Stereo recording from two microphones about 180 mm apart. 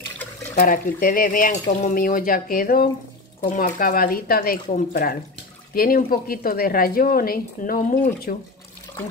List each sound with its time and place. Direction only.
0.6 s a woman's voice: 50° left (ahead or behind)